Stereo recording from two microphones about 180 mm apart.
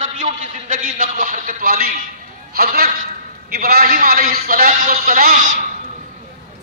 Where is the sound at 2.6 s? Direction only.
55° right (ahead or behind).